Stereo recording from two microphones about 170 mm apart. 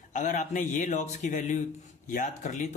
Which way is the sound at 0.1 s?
45° left (ahead or behind).